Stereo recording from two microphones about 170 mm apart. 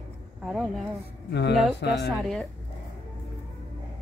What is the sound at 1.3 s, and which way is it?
Speech, 75° left (ahead or behind).